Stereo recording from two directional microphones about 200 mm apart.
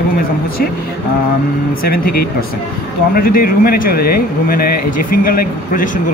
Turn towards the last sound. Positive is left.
turn(degrees=45)  # may be behind; listen again after turning